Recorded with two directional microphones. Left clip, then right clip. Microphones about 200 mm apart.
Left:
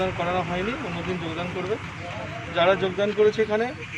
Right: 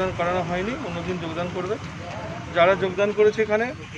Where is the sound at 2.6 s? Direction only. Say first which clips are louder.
Right 2 dB; centre (ahead or behind).